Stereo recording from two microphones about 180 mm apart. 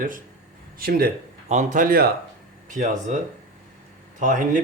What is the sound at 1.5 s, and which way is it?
Speech, 40° right (ahead or behind).